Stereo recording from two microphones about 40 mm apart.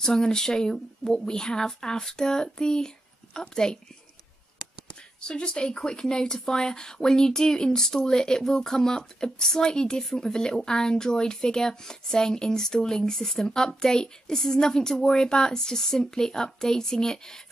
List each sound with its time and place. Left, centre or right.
0.0 s speech: centre
5.2 s speech: left